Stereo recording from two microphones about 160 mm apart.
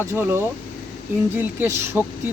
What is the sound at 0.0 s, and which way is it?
Speech, 15° right (ahead or behind).